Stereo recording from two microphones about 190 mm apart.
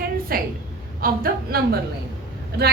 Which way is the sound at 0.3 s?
50° right (ahead or behind).